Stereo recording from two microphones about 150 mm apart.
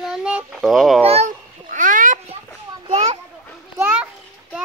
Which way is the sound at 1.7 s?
60° right (ahead or behind).